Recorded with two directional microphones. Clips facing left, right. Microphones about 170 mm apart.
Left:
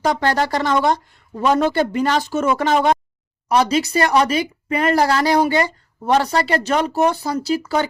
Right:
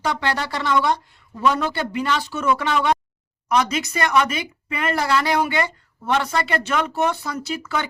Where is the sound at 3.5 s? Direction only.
30° left (ahead or behind).